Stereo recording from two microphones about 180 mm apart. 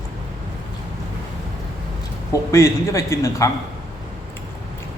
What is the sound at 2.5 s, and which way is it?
A man's voice, 15° left (ahead or behind).